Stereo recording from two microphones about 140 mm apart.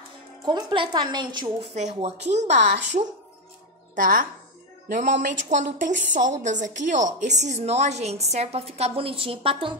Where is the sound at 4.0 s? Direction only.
80° right.